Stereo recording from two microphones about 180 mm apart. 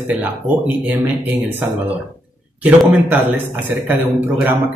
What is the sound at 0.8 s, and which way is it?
Speech, 10° right (ahead or behind).